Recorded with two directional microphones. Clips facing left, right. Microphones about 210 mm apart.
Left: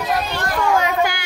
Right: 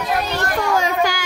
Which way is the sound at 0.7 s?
40° right (ahead or behind).